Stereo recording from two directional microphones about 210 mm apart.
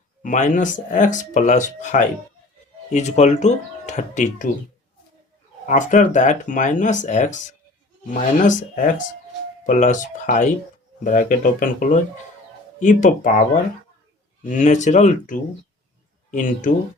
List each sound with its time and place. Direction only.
0.2 s speech: 35° left (ahead or behind)
5.6 s speech: 35° left (ahead or behind)
14.4 s speech: 35° left (ahead or behind)